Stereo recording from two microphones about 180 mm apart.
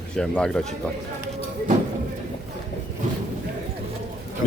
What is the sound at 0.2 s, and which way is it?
Speech, 5° left (ahead or behind).